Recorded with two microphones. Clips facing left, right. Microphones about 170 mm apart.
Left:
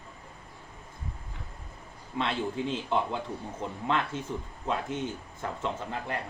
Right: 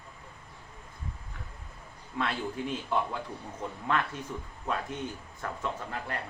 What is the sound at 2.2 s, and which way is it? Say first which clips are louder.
A man's voice: left 2 dB; 25° left (ahead or behind).